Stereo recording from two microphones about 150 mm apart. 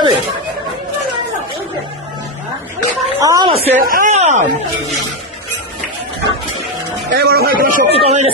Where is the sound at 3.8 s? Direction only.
70° right (ahead or behind).